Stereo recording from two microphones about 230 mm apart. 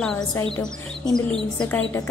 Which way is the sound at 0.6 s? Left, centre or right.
Centre.